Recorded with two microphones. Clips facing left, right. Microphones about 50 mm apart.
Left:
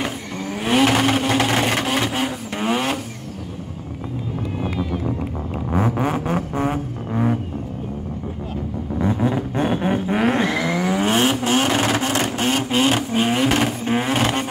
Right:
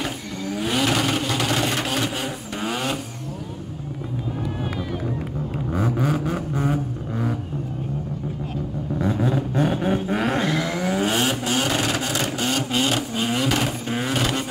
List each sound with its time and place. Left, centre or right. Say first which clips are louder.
0.0 s vehicle: left 2 dB; left
5.9 s vehicle: left 2 dB; left
6.2 s vehicle: left 3 dB; left
7.1 s vehicle: left 7 dB; left
9.1 s vehicle: left 1 dB; left
10.7 s vehicle: left 3 dB; left